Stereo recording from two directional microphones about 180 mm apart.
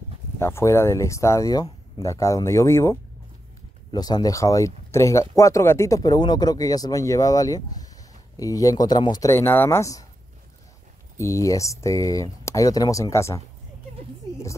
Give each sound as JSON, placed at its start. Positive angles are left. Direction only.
{"t": 0.4, "sound": "speech", "side_deg": 15}
{"t": 11.1, "sound": "speech", "side_deg": 15}